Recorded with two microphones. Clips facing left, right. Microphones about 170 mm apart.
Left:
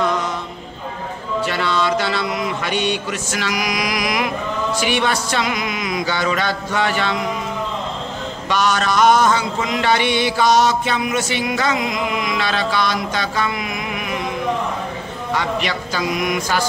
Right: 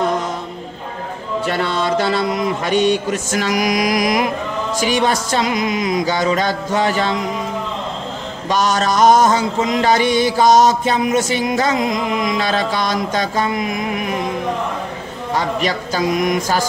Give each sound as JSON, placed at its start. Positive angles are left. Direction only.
{"t": 1.4, "sound": "speech", "side_deg": -50}
{"t": 4.7, "sound": "music", "side_deg": -40}
{"t": 8.5, "sound": "music", "side_deg": -40}
{"t": 15.3, "sound": "music", "side_deg": -40}